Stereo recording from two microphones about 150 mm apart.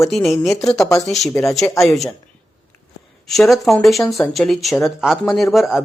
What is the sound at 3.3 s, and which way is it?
Speech, centre (ahead or behind).